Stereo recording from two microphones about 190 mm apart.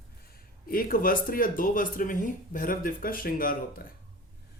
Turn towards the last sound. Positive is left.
turn(degrees=50)  # may be behind; listen again after turning